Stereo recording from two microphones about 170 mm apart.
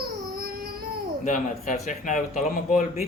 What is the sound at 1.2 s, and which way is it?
Speech, 50° left (ahead or behind).